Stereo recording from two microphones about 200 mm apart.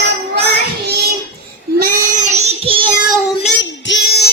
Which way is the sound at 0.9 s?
50° right (ahead or behind).